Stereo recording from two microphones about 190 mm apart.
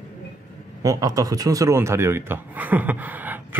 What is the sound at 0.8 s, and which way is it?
Speech, 20° right (ahead or behind).